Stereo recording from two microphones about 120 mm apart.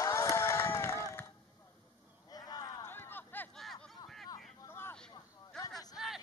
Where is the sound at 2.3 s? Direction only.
35° left (ahead or behind).